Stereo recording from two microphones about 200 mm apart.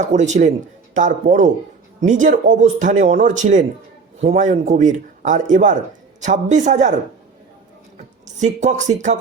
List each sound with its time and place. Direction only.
0.0 s a man's voice: 35° right (ahead or behind)
8.4 s a man's voice: 35° right (ahead or behind)